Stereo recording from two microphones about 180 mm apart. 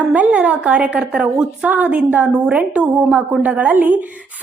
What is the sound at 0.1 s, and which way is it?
A woman's voice, 10° right (ahead or behind).